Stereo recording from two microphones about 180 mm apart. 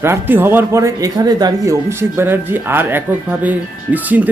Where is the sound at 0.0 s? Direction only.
10° right (ahead or behind).